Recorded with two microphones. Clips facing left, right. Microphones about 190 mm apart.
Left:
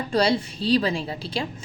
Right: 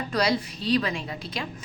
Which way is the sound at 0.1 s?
30° left (ahead or behind).